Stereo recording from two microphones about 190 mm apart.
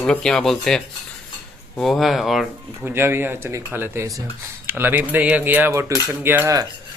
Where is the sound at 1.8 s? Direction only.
Centre (ahead or behind).